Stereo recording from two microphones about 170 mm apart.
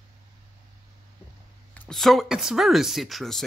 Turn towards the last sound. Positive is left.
turn(degrees=0)  # may be behind; listen again after turning